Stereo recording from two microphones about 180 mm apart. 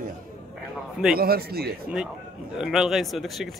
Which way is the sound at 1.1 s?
55° right (ahead or behind).